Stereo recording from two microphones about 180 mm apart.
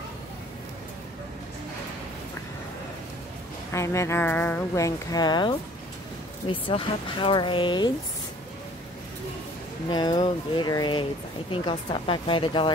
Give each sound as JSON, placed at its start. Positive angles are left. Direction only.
{"t": 3.7, "sound": "speech", "side_deg": 15}
{"t": 9.8, "sound": "speech", "side_deg": 25}